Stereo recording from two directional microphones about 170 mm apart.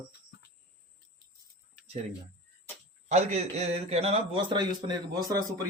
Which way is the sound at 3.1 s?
40° right (ahead or behind).